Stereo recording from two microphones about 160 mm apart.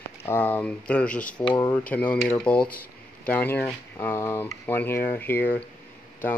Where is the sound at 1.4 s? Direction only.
30° left (ahead or behind).